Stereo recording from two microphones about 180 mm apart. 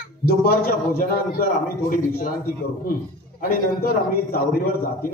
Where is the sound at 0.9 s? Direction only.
55° left (ahead or behind).